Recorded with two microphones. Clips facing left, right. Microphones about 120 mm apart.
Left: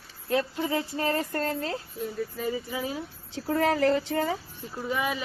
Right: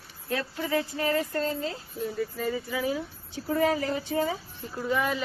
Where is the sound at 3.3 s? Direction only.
60° left (ahead or behind).